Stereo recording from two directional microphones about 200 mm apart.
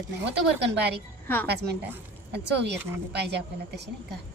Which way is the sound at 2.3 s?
60° right (ahead or behind).